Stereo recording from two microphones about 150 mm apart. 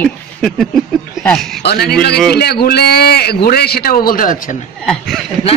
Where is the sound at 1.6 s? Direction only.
90° left; by 4.6 s 65° left (ahead or behind).